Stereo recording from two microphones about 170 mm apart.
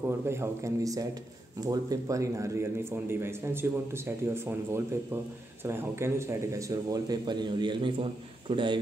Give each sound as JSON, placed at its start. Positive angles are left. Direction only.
{"t": 0.3, "sound": "a man's voice", "side_deg": -15}